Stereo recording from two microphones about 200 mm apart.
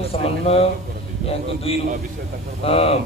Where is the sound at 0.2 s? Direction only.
30° left (ahead or behind).